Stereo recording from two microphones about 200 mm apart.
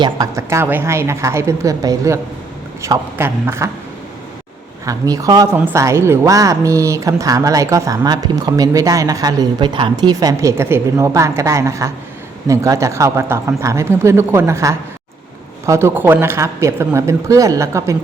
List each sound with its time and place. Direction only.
0.0 s a woman's voice: 15° right (ahead or behind)
4.9 s a woman's voice: 15° right (ahead or behind)